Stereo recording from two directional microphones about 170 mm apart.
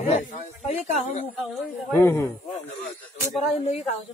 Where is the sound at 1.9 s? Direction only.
15° left (ahead or behind).